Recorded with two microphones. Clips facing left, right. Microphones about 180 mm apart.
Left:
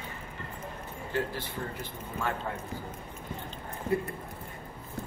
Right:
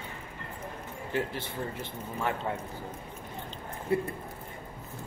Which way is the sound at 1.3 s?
25° right (ahead or behind).